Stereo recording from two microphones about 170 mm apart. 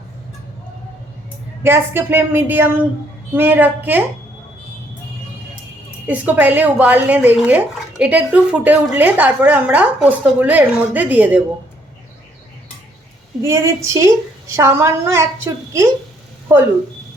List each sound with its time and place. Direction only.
1.6 s speech: 15° right (ahead or behind)
6.1 s speech: 10° right (ahead or behind)
13.4 s speech: 15° right (ahead or behind)